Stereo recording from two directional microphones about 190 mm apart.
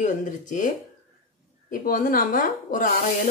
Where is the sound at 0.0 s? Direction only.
40° left (ahead or behind).